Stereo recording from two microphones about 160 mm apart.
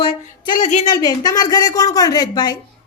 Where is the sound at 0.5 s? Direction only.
50° left (ahead or behind).